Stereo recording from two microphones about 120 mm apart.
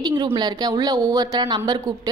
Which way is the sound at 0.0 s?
40° right (ahead or behind).